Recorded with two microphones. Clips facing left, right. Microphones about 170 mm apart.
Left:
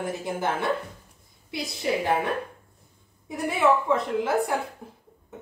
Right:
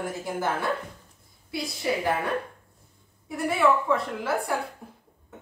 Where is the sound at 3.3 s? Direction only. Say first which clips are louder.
Left 1 dB; 20° left (ahead or behind).